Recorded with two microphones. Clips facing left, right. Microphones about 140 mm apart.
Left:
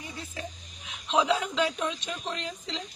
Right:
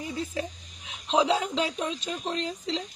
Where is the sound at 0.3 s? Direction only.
35° right (ahead or behind).